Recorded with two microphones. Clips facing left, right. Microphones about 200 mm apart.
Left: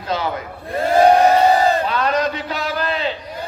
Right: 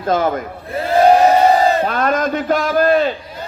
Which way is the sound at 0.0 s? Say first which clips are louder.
Right 6 dB; 50° right (ahead or behind).